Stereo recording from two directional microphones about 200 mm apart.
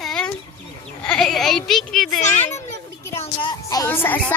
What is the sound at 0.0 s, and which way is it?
Chicken, 5° left (ahead or behind).